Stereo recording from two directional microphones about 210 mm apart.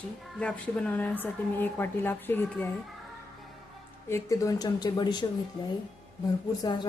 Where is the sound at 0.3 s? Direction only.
5° left (ahead or behind).